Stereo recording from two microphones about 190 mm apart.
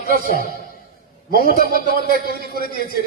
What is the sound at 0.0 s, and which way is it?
Speech, 45° right (ahead or behind).